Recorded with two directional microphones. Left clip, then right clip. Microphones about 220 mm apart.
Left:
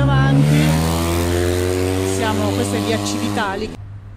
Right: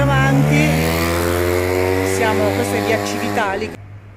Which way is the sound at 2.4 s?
50° left (ahead or behind).